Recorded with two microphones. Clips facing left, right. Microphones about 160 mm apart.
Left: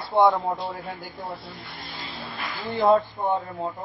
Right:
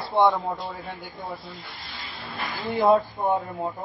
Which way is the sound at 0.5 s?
15° left (ahead or behind).